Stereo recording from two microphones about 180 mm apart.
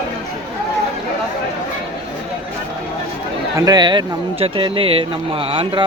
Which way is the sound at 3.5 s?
20° right (ahead or behind).